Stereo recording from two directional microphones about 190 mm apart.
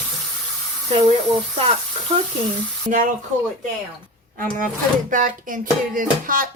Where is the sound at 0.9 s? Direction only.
30° right (ahead or behind).